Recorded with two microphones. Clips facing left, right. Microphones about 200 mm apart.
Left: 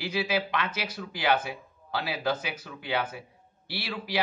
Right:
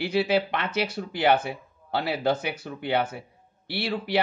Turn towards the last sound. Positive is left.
turn(degrees=-55)  # may be behind; listen again after turning